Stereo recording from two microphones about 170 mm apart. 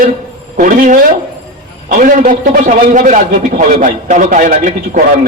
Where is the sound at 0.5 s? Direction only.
50° right (ahead or behind).